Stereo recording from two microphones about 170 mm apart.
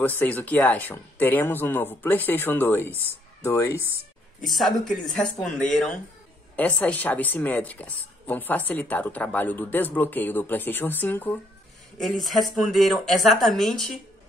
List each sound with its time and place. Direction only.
0.0 s a woman's voice: 10° left (ahead or behind)
4.5 s a woman's voice: centre (ahead or behind)
12.0 s speech: centre (ahead or behind)